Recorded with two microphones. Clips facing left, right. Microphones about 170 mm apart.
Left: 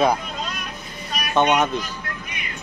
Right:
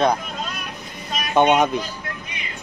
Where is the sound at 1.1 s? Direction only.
20° right (ahead or behind).